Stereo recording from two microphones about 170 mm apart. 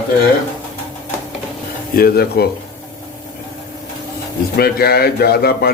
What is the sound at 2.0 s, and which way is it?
Speech, 65° left (ahead or behind).